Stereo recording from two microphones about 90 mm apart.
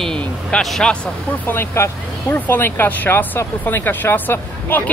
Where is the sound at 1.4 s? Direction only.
25° left (ahead or behind).